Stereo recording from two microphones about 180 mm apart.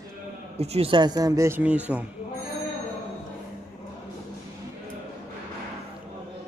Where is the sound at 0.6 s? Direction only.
35° right (ahead or behind); by 2.1 s 5° right (ahead or behind).